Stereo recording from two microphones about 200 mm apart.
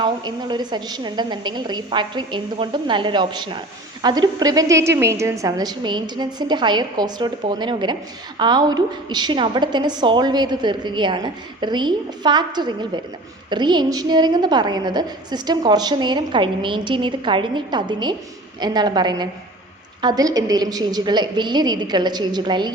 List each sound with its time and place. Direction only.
0.0 s a woman's voice: 20° right (ahead or behind)